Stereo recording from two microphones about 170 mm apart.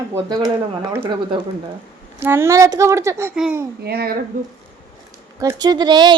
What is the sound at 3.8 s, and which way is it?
Speech, 65° right (ahead or behind).